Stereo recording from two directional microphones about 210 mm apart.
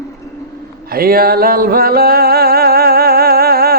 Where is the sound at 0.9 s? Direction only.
45° right (ahead or behind).